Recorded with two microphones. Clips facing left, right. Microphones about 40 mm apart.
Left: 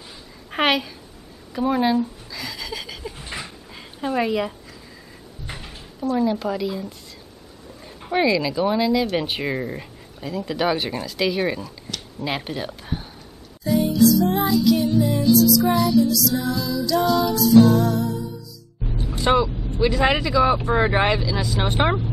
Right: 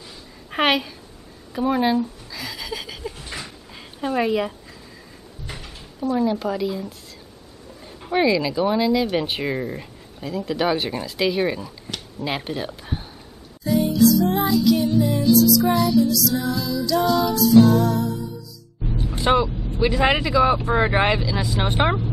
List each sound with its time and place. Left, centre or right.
0.5 s a woman's voice: centre
1.5 s a sound: centre
3.2 s dog: centre
3.7 s speech: centre
5.9 s speech: centre
13.7 s music: centre
19.1 s speech: centre